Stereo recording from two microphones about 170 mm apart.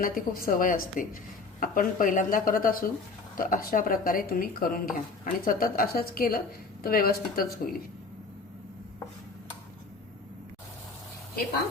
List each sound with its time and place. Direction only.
0.0 s speech: 60° left (ahead or behind)